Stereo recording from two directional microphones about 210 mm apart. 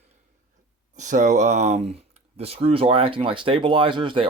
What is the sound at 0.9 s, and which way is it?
Speech, 35° right (ahead or behind).